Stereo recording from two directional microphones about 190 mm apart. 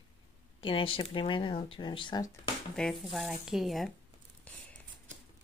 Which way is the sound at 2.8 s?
Centre (ahead or behind).